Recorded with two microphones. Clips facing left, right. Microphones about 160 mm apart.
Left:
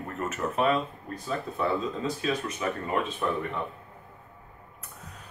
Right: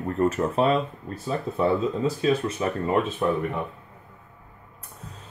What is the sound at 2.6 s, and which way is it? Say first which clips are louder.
Speech: right 4 dB; 30° right (ahead or behind).